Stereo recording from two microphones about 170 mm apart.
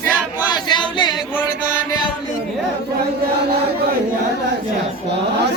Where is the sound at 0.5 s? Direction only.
25° left (ahead or behind).